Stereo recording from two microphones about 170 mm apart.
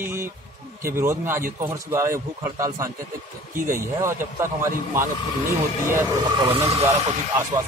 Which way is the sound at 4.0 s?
15° right (ahead or behind).